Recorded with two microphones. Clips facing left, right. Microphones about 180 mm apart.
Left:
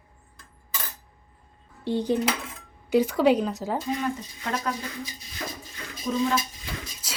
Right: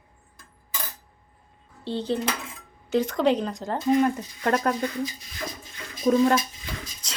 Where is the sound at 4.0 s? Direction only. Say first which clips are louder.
Right 7 dB; 55° right (ahead or behind).